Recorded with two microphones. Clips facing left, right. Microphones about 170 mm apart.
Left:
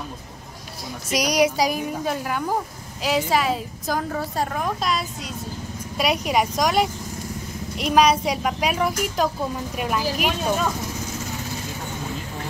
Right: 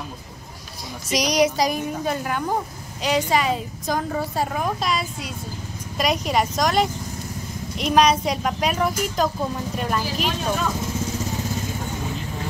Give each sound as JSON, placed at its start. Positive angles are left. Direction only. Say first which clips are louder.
{"t": 1.1, "sound": "a woman's voice", "louder": "even", "side_deg": 5}
{"t": 5.9, "sound": "a woman's voice", "louder": "even", "side_deg": 10}